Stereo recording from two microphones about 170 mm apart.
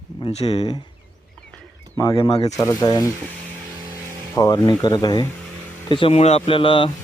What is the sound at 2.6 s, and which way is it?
Speech, 20° left (ahead or behind).